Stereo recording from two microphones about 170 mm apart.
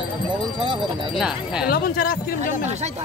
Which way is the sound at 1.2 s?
5° right (ahead or behind).